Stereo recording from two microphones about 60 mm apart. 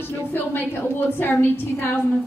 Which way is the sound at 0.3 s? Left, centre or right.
Left.